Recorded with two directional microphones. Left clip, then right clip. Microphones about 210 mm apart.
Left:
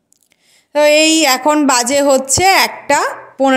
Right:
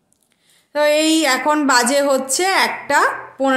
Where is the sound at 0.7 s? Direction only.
30° left (ahead or behind).